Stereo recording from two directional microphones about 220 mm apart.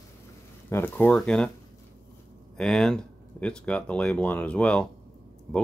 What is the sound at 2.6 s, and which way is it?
Speech, centre (ahead or behind).